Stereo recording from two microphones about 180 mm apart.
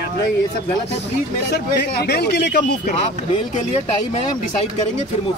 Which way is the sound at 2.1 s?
65° left (ahead or behind).